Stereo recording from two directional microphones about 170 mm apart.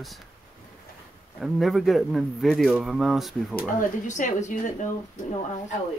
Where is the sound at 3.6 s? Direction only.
50° left (ahead or behind).